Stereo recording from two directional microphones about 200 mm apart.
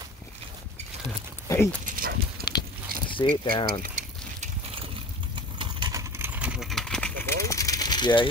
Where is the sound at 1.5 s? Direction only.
10° left (ahead or behind).